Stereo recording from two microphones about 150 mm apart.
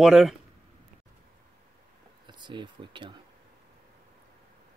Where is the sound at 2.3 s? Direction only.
30° right (ahead or behind).